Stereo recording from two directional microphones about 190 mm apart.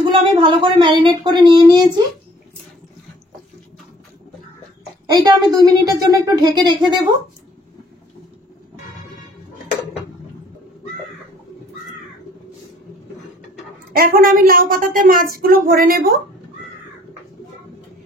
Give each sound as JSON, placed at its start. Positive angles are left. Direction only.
{"t": 0.0, "sound": "speech", "side_deg": -25}
{"t": 5.0, "sound": "speech", "side_deg": -20}
{"t": 13.9, "sound": "speech", "side_deg": -50}